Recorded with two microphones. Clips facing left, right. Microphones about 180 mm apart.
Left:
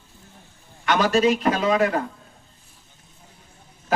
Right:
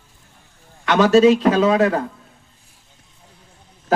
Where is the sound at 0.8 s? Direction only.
70° right (ahead or behind).